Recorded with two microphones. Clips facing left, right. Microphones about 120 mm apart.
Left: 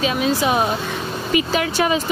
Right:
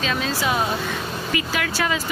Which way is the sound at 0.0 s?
15° left (ahead or behind).